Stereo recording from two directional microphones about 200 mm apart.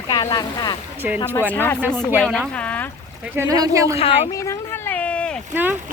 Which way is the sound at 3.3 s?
15° right (ahead or behind).